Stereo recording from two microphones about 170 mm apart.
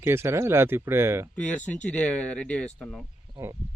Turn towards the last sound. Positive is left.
turn(degrees=-15)  # may be behind; listen again after turning